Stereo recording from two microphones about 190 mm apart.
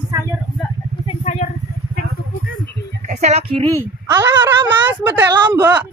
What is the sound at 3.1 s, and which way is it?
Speech, 35° right (ahead or behind).